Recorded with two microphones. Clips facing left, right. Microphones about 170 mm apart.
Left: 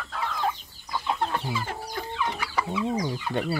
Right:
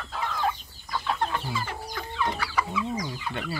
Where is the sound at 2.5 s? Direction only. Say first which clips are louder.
Left 1 dB; 30° left (ahead or behind).